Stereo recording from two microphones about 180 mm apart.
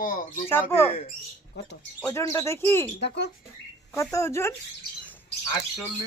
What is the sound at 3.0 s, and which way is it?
Speech, 70° left (ahead or behind).